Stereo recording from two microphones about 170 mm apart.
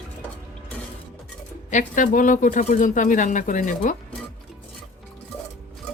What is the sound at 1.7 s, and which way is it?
Speech, 50° left (ahead or behind).